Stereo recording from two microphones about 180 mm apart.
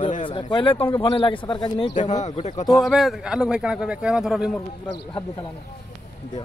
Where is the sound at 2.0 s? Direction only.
40° left (ahead or behind).